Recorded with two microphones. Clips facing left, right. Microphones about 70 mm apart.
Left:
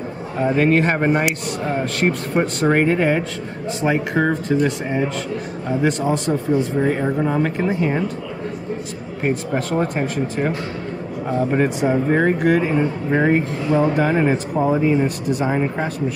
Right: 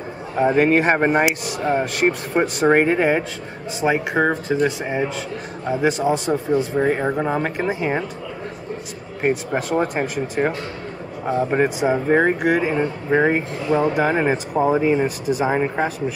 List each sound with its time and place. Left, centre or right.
0.4 s speech: centre
6.8 s speech: centre
9.2 s speech: centre
15.0 s speech: centre
15.5 s speech: centre